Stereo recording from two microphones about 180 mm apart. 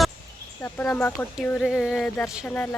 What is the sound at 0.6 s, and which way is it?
Speech, 5° left (ahead or behind).